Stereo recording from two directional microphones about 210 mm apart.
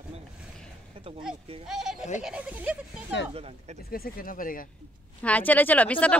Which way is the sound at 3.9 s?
45° left (ahead or behind).